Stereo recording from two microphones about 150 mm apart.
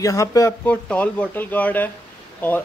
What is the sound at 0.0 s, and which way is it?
Speech, 20° left (ahead or behind).